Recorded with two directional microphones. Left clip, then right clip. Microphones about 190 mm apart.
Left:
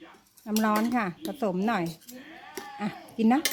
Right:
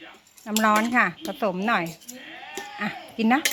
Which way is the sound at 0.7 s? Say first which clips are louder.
Right 5 dB; centre (ahead or behind).